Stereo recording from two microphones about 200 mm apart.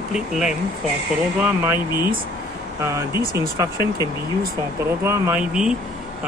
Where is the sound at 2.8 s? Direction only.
15° right (ahead or behind).